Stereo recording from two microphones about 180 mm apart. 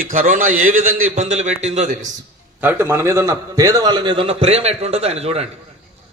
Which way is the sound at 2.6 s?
10° right (ahead or behind).